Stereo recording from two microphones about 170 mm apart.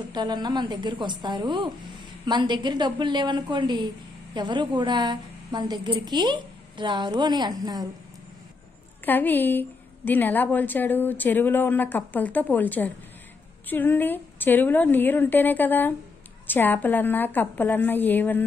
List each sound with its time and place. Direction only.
0.1 s a woman's voice: 25° right (ahead or behind)
9.0 s a woman's voice: 10° left (ahead or behind)